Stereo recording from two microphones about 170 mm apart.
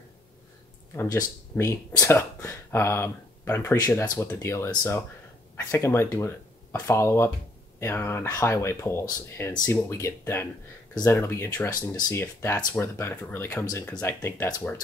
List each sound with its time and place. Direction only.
1.1 s speech: 15° left (ahead or behind)